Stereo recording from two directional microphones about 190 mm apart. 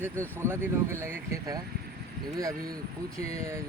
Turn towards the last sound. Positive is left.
turn(degrees=-15)  # may be behind; listen again after turning